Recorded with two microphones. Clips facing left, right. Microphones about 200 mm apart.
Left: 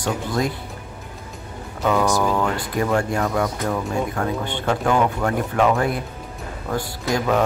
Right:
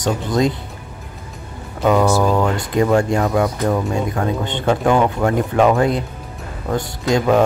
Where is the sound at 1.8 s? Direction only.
25° right (ahead or behind).